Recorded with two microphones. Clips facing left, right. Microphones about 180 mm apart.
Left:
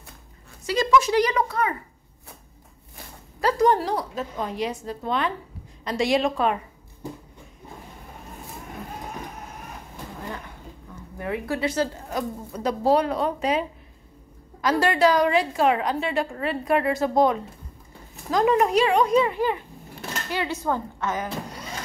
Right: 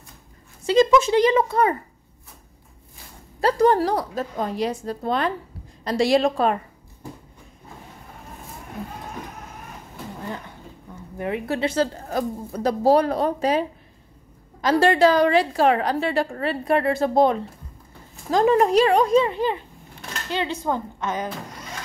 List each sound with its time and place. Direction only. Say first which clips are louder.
0.7 s speech: right 4 dB; 25° right (ahead or behind)
3.3 s a woman's voice: right 2 dB; 30° right (ahead or behind)
11.1 s speech: right 2 dB; 20° right (ahead or behind)
12.0 s a woman's voice: right 3 dB; 40° right (ahead or behind)
14.6 s a woman's voice: right 3 dB; 25° right (ahead or behind)